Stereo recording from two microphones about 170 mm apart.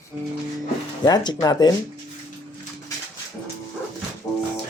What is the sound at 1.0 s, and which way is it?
Speech, 25° left (ahead or behind).